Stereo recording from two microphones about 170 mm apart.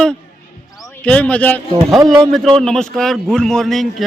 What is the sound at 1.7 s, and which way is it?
Speech, 25° right (ahead or behind).